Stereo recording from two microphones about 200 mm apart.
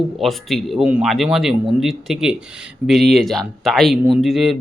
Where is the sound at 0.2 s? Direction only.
Centre (ahead or behind).